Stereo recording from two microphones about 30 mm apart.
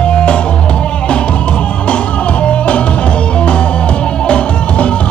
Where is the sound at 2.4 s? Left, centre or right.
Left.